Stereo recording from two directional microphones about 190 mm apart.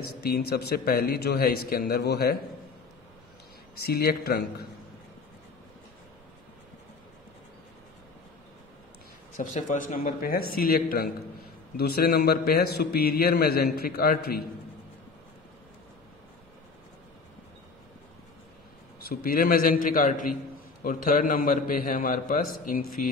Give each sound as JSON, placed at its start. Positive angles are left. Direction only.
{"t": 0.2, "sound": "a man's voice", "side_deg": 55}
{"t": 3.7, "sound": "a man's voice", "side_deg": 55}
{"t": 9.4, "sound": "a man's voice", "side_deg": 40}
{"t": 18.9, "sound": "a man's voice", "side_deg": 50}